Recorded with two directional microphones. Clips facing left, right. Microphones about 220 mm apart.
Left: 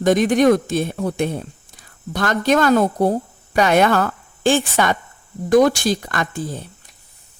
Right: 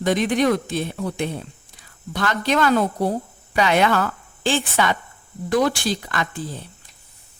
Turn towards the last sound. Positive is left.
turn(degrees=45)  # may be behind; listen again after turning